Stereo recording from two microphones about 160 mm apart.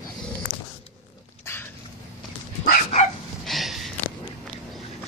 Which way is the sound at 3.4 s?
Centre (ahead or behind).